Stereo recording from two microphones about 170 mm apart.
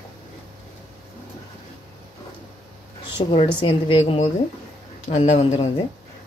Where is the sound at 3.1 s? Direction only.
30° left (ahead or behind).